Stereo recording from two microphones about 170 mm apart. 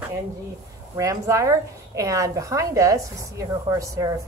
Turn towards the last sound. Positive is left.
turn(degrees=-20)  # may be behind; listen again after turning